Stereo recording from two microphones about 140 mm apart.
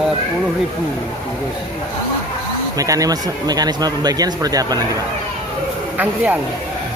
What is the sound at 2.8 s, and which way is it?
Speech, 25° right (ahead or behind).